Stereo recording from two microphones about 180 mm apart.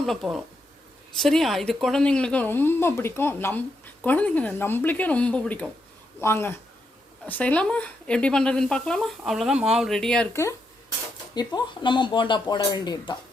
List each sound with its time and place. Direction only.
0.0 s a woman's voice: centre (ahead or behind)
11.3 s speech: 25° left (ahead or behind)